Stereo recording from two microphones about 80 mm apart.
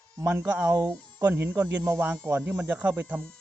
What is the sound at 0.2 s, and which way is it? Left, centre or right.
Speech, right.